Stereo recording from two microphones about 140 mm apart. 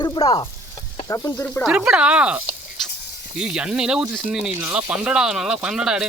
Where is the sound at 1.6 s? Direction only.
5° right (ahead or behind).